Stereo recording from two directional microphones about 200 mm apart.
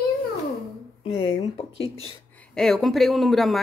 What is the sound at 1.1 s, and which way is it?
Speech, 25° left (ahead or behind).